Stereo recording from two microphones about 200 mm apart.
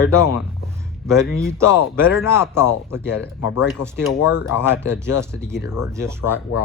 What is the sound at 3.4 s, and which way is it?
Speech, 60° left (ahead or behind).